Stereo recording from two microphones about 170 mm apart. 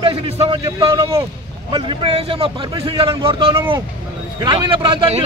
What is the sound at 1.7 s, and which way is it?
A man's voice, 30° right (ahead or behind).